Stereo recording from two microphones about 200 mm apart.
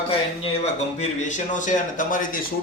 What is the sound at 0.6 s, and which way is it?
A man's voice, 35° left (ahead or behind).